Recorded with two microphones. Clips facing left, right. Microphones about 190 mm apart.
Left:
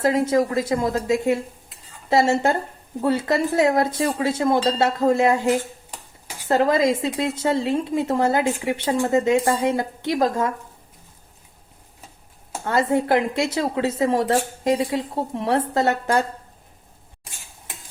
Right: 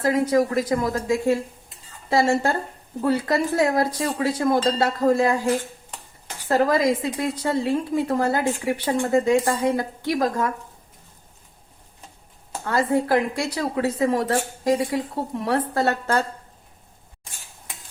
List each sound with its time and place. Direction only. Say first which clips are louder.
0.0 s a woman's voice: left 1 dB; 25° left (ahead or behind)
12.6 s a woman's voice: left 1 dB; 25° left (ahead or behind)